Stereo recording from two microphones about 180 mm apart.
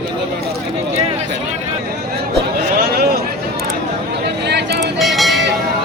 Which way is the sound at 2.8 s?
55° right (ahead or behind).